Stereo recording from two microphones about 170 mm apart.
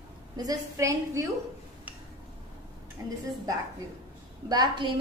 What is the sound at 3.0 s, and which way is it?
Speech, 15° right (ahead or behind).